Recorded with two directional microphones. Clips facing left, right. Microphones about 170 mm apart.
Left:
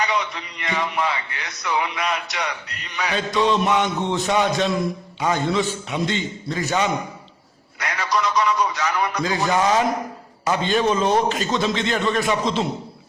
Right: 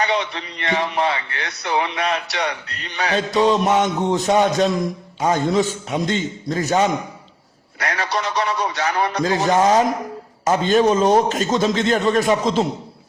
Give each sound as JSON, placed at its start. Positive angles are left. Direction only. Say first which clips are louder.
{"t": 0.0, "sound": "a man's voice", "louder": "right 3 dB", "side_deg": -30}